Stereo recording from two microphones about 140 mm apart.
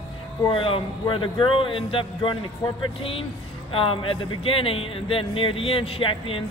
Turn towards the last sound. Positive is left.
turn(degrees=40)  # may be behind; listen again after turning